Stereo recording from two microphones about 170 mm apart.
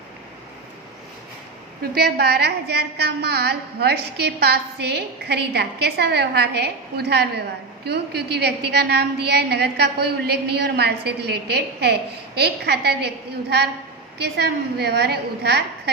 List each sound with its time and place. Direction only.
2.0 s a woman's voice: 70° right (ahead or behind)
14.2 s a woman's voice: 75° right (ahead or behind)